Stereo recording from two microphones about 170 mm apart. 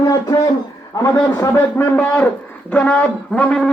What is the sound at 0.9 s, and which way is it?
A man's voice, 20° left (ahead or behind).